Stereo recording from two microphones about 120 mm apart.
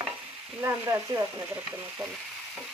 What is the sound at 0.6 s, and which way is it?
Stir, 25° right (ahead or behind).